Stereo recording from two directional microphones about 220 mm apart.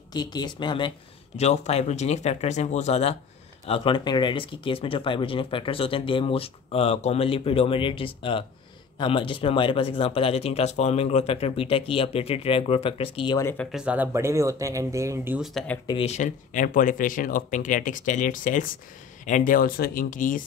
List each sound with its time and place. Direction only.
0.1 s speech: 20° left (ahead or behind)
13.7 s speech: 5° right (ahead or behind)
15.9 s speech: 30° left (ahead or behind)